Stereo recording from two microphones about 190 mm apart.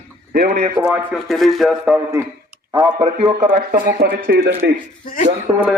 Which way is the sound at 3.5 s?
50° right (ahead or behind).